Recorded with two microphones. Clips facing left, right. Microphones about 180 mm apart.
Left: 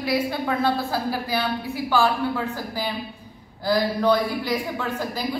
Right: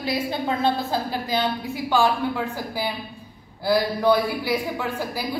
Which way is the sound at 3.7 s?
10° right (ahead or behind).